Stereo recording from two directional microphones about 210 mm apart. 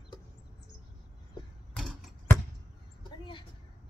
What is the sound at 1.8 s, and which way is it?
Typewriter, centre (ahead or behind).